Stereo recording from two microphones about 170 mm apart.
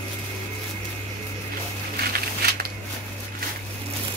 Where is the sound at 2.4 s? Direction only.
65° right (ahead or behind).